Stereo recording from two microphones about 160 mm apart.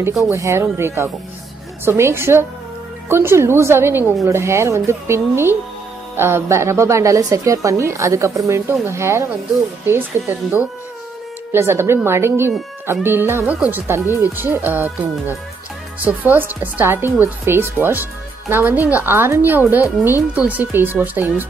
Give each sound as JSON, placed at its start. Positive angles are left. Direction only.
{"t": 0.2, "sound": "a woman's voice", "side_deg": -15}